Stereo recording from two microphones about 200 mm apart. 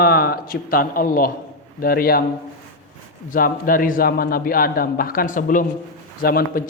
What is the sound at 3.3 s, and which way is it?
Speech, 45° left (ahead or behind).